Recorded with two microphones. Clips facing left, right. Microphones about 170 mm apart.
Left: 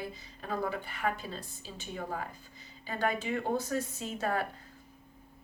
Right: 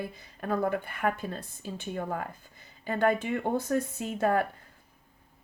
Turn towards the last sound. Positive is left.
turn(degrees=-55)  # may be behind; listen again after turning